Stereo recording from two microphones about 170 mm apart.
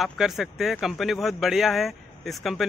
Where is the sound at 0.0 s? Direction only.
Centre (ahead or behind).